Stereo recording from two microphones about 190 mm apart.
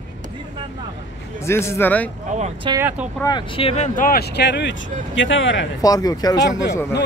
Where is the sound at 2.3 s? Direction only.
35° right (ahead or behind).